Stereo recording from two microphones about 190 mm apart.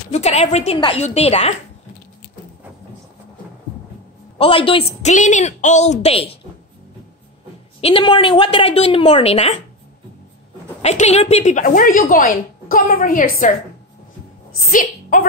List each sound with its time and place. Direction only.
0.1 s a woman's voice: 35° left (ahead or behind)
4.4 s a woman's voice: 30° left (ahead or behind)
7.8 s a woman's voice: 25° left (ahead or behind)
10.8 s a woman's voice: 35° left (ahead or behind)
14.7 s a woman's voice: 45° left (ahead or behind)